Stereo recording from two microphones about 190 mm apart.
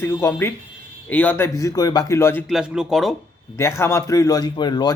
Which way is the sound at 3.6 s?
15° left (ahead or behind).